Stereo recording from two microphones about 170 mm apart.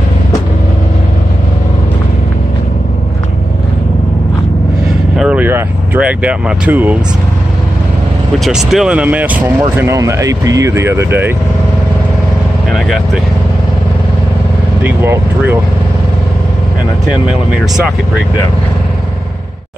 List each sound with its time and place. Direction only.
5.1 s speech: 5° right (ahead or behind)
8.5 s speech: 5° right (ahead or behind)
12.7 s speech: centre (ahead or behind)
14.8 s speech: 10° right (ahead or behind)
17.3 s speech: 5° right (ahead or behind)